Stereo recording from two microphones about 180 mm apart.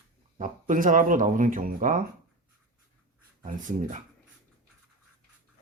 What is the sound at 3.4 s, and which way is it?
Speech, 45° right (ahead or behind).